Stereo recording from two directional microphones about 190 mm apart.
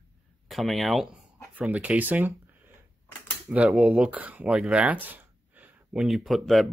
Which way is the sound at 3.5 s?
5° right (ahead or behind).